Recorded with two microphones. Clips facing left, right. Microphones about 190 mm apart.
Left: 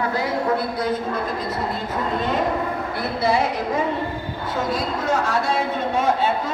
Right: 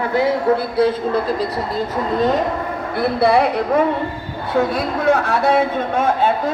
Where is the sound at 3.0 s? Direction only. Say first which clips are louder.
Right 7 dB; 60° right (ahead or behind).